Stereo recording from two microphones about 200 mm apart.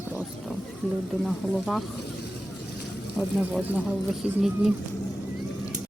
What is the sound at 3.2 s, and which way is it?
Speech, centre (ahead or behind).